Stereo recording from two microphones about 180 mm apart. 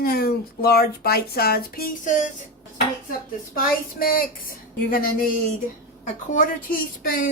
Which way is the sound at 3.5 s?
55° left (ahead or behind).